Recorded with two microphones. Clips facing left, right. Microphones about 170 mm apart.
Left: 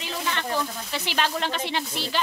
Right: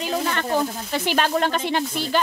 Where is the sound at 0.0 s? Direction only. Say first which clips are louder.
Right 6 dB; 45° right (ahead or behind).